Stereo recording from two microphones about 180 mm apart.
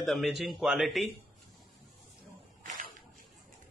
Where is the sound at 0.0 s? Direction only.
Centre (ahead or behind).